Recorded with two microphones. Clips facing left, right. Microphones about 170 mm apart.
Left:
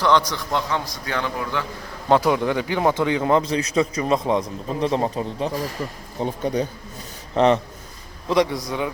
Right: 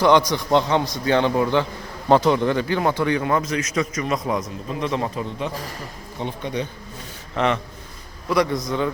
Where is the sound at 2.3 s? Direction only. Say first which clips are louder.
Right 1 dB; 10° left (ahead or behind); by 7.6 s 35° left (ahead or behind).